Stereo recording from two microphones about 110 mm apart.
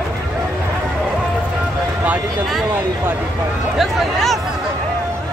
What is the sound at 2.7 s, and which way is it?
Speech, 20° right (ahead or behind).